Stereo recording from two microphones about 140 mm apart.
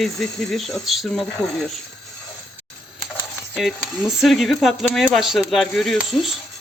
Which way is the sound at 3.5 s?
Centre (ahead or behind).